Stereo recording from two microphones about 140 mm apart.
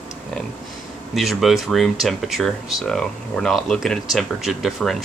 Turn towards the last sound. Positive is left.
turn(degrees=0)  # may be behind; listen again after turning